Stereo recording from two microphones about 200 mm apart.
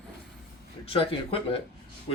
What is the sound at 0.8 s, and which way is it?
Speech, 25° left (ahead or behind).